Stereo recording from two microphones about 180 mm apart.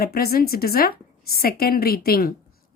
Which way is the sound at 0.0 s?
60° left (ahead or behind).